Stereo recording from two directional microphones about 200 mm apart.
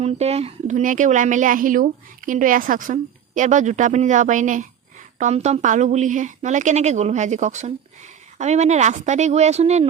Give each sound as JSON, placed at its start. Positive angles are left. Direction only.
{"t": 0.0, "sound": "a woman's voice", "side_deg": -30}